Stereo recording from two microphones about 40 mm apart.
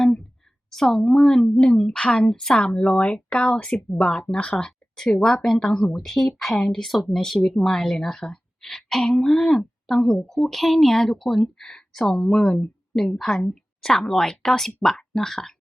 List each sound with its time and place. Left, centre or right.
0.7 s speech: centre; by 4.5 s left
4.9 s speech: centre
5.5 s a woman's voice: centre